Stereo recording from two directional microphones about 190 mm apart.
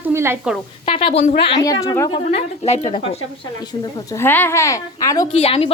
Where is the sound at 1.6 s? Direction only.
20° left (ahead or behind).